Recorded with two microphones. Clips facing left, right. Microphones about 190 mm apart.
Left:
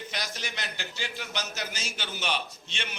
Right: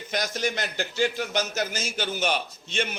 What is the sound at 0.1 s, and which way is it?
A man's voice, 45° right (ahead or behind).